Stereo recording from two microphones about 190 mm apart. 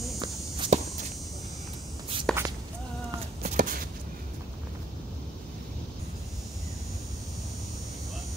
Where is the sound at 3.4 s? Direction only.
45° right (ahead or behind).